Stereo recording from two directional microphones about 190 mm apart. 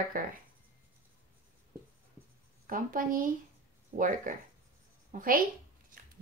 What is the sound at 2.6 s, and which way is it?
A woman's voice, 45° right (ahead or behind).